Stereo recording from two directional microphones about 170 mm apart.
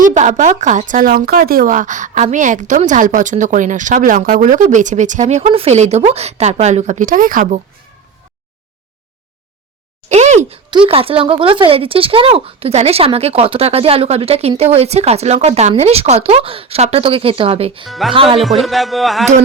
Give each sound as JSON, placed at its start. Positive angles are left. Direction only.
{"t": 0.0, "sound": "speech", "side_deg": -45}
{"t": 10.1, "sound": "a sound", "side_deg": -45}
{"t": 10.7, "sound": "speech", "side_deg": -30}
{"t": 17.8, "sound": "music", "side_deg": 0}
{"t": 18.1, "sound": "speech", "side_deg": -30}
{"t": 18.6, "sound": "music", "side_deg": 0}